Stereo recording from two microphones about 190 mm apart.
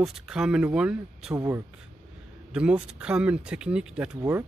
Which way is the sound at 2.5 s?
5° right (ahead or behind).